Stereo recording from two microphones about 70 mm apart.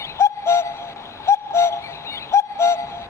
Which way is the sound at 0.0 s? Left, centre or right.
Left.